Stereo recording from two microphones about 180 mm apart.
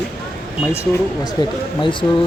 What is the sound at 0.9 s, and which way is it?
Speech, 20° left (ahead or behind).